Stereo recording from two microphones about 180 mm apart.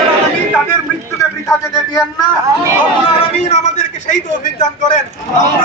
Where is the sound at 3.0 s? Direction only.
40° left (ahead or behind).